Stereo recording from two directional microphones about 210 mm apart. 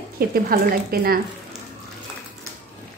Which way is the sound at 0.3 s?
45° right (ahead or behind).